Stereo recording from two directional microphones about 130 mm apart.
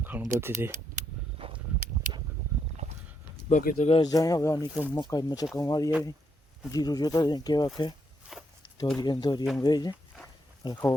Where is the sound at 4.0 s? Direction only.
30° left (ahead or behind).